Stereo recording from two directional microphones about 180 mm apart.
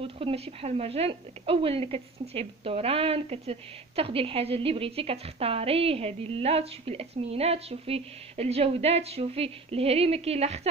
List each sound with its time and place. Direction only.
0.0 s a woman's voice: 30° right (ahead or behind)